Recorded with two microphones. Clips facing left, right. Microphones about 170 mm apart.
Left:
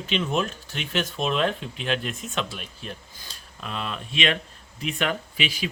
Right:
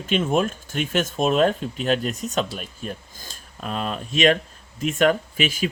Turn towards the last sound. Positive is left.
turn(degrees=-45)  # may be behind; listen again after turning